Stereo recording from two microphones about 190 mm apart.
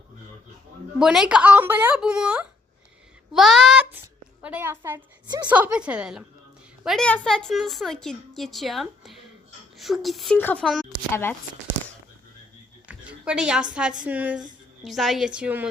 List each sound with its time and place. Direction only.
0.9 s a woman's voice: centre (ahead or behind)
5.2 s a woman's voice: 25° right (ahead or behind)
5.5 s a woman's voice: 10° right (ahead or behind)
11.1 s speech: 10° left (ahead or behind)
12.9 s a woman's voice: 5° right (ahead or behind)